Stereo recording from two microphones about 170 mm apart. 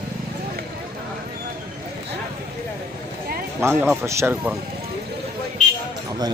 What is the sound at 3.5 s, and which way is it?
Speech, 15° right (ahead or behind).